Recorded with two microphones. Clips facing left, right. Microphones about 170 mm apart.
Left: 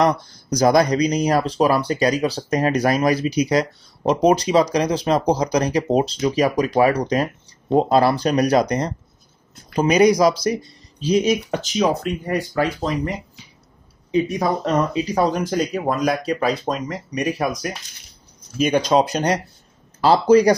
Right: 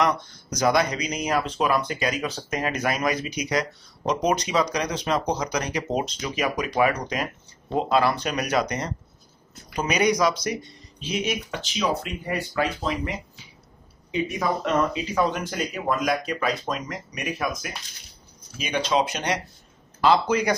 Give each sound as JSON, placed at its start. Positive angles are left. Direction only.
{"t": 0.0, "sound": "speech", "side_deg": 35}
{"t": 14.1, "sound": "speech", "side_deg": 35}